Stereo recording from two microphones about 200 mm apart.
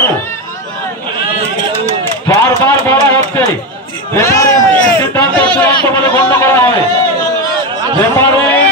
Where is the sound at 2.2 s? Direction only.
10° left (ahead or behind).